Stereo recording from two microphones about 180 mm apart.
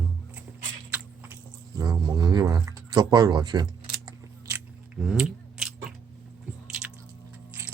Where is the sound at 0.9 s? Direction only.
10° right (ahead or behind).